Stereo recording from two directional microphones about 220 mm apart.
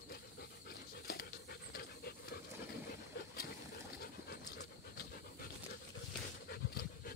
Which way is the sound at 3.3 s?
45° left (ahead or behind).